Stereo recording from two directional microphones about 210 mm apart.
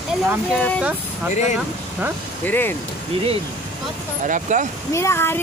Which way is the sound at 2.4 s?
10° left (ahead or behind).